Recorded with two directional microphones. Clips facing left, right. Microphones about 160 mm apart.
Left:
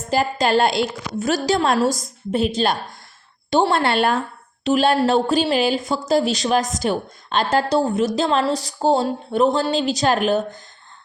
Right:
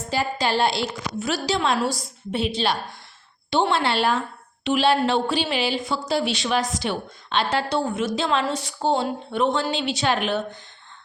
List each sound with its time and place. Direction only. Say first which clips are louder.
0.1 s a woman's voice: left 5 dB; 50° left (ahead or behind)